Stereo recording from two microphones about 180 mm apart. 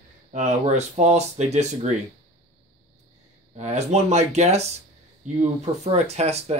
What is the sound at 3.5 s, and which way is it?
Speech, 40° right (ahead or behind).